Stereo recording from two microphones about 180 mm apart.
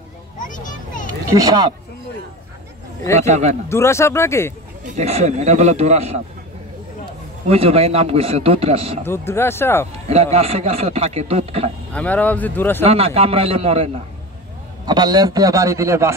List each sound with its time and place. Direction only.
0.5 s children playing: 45° left (ahead or behind)
1.3 s a man's voice: 20° right (ahead or behind)
3.2 s a man's voice: 40° right (ahead or behind)
3.6 s speech: 15° left (ahead or behind)
4.8 s a man's voice: 40° right (ahead or behind)
7.4 s a man's voice: 35° right (ahead or behind)
9.0 s speech: 15° left (ahead or behind)
10.0 s a man's voice: 35° right (ahead or behind)
11.9 s speech: 10° left (ahead or behind)
12.8 s a man's voice: 35° right (ahead or behind)
14.9 s a man's voice: 20° right (ahead or behind)